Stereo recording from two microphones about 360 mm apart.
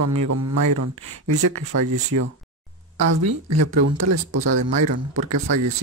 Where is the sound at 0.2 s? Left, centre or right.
Right.